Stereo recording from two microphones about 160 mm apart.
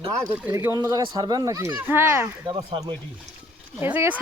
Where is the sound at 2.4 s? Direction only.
30° right (ahead or behind).